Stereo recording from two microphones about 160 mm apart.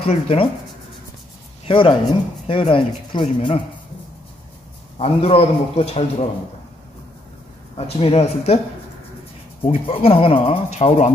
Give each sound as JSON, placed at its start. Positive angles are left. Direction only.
{"t": 0.1, "sound": "speech", "side_deg": 35}
{"t": 1.7, "sound": "speech", "side_deg": 35}
{"t": 4.9, "sound": "speech", "side_deg": 40}
{"t": 7.7, "sound": "speech", "side_deg": 40}
{"t": 9.6, "sound": "speech", "side_deg": 35}